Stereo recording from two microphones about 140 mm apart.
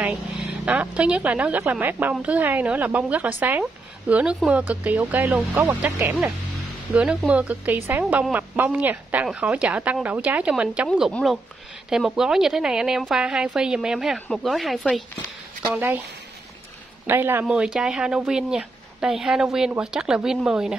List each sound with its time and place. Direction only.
0.0 s a woman's voice: 10° right (ahead or behind)
11.9 s speech: 5° right (ahead or behind)
15.7 s a woman's voice: 15° right (ahead or behind)
17.0 s speech: 15° right (ahead or behind)